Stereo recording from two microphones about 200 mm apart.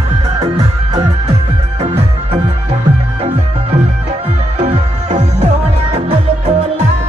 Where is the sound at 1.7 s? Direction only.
30° right (ahead or behind).